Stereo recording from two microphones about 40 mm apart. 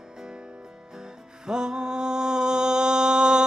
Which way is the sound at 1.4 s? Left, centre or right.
Centre.